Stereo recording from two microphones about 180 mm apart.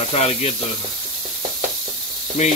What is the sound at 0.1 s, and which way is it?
Sizzle, 35° left (ahead or behind).